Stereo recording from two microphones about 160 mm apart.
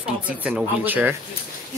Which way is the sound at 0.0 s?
5° right (ahead or behind).